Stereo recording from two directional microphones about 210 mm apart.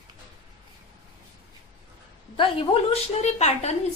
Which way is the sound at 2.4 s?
25° left (ahead or behind).